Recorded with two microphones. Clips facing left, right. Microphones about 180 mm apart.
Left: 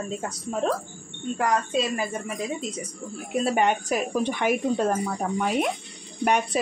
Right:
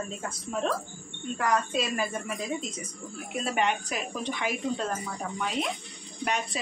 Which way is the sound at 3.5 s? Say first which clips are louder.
Left 4 dB; 45° left (ahead or behind).